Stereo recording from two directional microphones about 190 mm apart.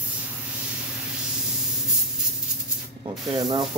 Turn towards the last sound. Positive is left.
turn(degrees=-20)  # may be behind; listen again after turning